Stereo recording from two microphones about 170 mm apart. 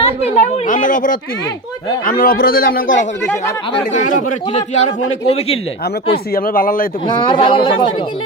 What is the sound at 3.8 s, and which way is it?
Speech, 50° left (ahead or behind).